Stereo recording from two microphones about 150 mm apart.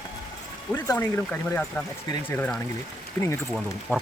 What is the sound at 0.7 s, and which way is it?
Speech, 15° left (ahead or behind).